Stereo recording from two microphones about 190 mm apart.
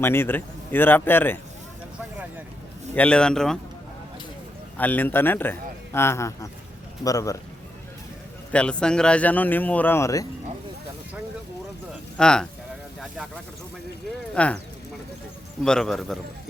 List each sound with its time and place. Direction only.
0.0 s a man's voice: 10° left (ahead or behind)
2.9 s speech: 5° left (ahead or behind)
4.8 s a man's voice: 10° left (ahead or behind)
8.5 s a man's voice: 5° left (ahead or behind)
12.1 s speech: 5° left (ahead or behind)
14.3 s a man's voice: 5° left (ahead or behind)
15.6 s speech: 5° left (ahead or behind)